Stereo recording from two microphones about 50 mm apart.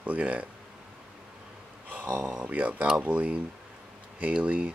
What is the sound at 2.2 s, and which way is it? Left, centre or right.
Speech, right.